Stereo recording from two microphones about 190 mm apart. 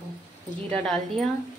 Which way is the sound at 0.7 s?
5° left (ahead or behind).